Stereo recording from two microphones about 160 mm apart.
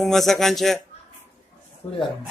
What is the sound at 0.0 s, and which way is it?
Speech, centre (ahead or behind).